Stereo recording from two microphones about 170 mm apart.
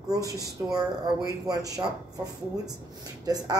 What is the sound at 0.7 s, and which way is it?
A woman's voice, 20° right (ahead or behind).